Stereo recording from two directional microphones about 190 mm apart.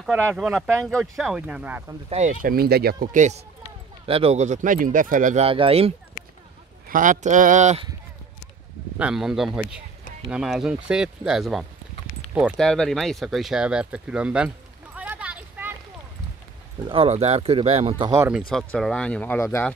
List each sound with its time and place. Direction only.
0.0 s speech: 10° right (ahead or behind)
2.0 s speech: 35° right (ahead or behind)
6.9 s speech: 45° right (ahead or behind)
8.9 s speech: 5° right (ahead or behind)
15.0 s a sound: 5° right (ahead or behind)
16.8 s speech: 30° right (ahead or behind)
18.1 s speech: 15° right (ahead or behind)
18.5 s speech: centre (ahead or behind)